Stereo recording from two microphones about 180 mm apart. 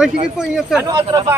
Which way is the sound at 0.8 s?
20° right (ahead or behind).